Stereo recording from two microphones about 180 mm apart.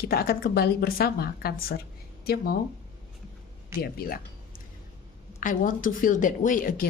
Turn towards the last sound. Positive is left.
turn(degrees=50)  # may be behind; listen again after turning